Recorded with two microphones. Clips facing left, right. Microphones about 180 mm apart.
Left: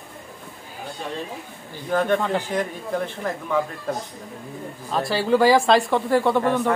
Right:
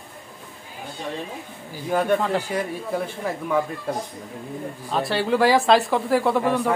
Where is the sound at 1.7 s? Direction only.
10° right (ahead or behind).